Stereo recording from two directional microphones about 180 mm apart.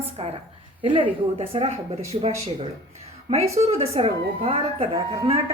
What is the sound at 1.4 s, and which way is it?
Speech, 35° right (ahead or behind).